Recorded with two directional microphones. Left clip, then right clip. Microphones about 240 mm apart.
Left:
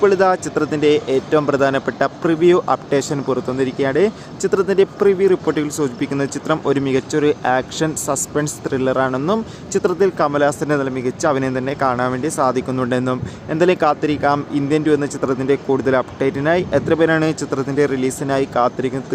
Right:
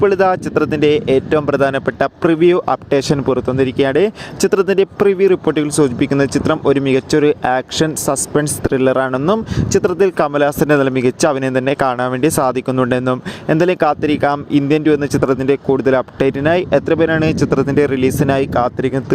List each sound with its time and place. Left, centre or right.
0.0 s speech: right